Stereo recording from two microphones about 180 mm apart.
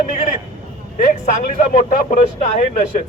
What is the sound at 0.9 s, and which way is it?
A man's voice, 45° left (ahead or behind).